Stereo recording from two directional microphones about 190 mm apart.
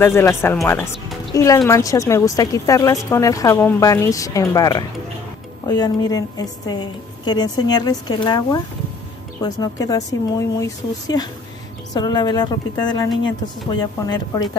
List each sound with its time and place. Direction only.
0.0 s a woman's voice: 15° left (ahead or behind)